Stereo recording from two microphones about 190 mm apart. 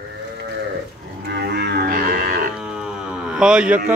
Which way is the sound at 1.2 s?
60° right (ahead or behind).